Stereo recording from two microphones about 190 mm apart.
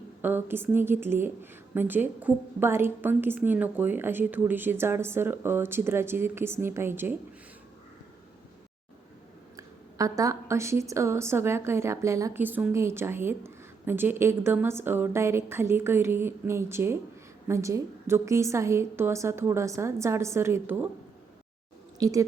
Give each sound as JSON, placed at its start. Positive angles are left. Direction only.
{"t": 0.2, "sound": "a woman's voice", "side_deg": -10}
{"t": 9.6, "sound": "a woman's voice", "side_deg": -15}
{"t": 21.9, "sound": "speech", "side_deg": -20}